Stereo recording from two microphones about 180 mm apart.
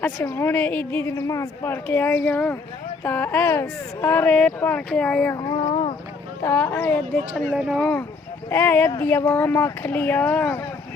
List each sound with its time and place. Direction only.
0.0 s a woman's voice: 15° left (ahead or behind)
5.3 s a sound: 25° left (ahead or behind)
6.4 s a woman's voice: 15° left (ahead or behind)
7.5 s speech: 5° right (ahead or behind)
8.4 s a woman's voice: 10° left (ahead or behind)